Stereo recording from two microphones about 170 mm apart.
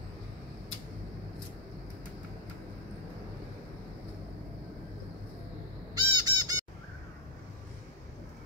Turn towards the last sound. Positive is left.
turn(degrees=-20)  # may be behind; listen again after turning